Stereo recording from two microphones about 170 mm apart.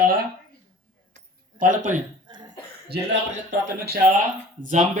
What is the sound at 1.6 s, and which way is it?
Speech, 45° right (ahead or behind).